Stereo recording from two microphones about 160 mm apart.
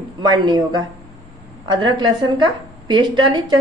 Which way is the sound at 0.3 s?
30° right (ahead or behind).